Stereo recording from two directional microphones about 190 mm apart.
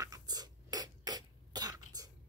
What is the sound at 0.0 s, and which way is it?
Cough, 20° right (ahead or behind).